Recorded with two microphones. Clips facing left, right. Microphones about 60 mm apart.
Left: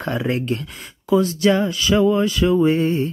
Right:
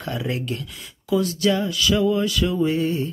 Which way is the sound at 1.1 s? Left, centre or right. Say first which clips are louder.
Left 4 dB; left.